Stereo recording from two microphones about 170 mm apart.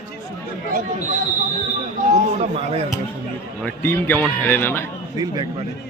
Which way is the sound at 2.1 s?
40° right (ahead or behind).